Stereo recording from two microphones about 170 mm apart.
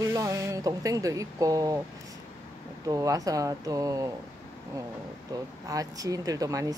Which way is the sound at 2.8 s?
20° right (ahead or behind).